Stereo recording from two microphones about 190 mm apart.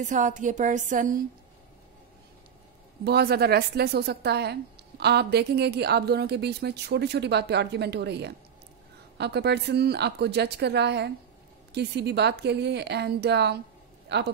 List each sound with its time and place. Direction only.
0.0 s a woman's voice: 40° right (ahead or behind)
3.0 s a woman's voice: 60° right (ahead or behind)